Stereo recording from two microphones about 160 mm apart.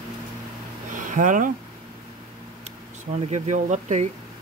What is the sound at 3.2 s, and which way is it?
Speech, 45° right (ahead or behind).